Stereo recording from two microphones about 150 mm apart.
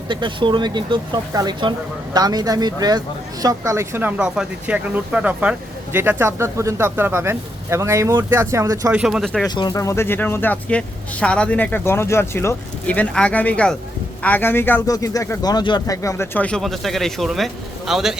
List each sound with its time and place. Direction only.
0.1 s speech: 30° right (ahead or behind)
8.9 s speech: 5° right (ahead or behind)
9.6 s speech: 25° left (ahead or behind); by 18.1 s centre (ahead or behind)